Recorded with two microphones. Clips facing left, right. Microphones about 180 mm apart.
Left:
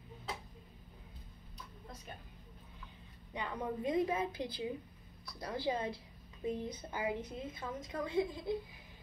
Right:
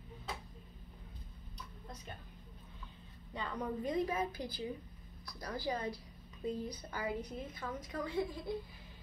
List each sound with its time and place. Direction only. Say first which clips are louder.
3.3 s a woman's voice: even; 15° left (ahead or behind)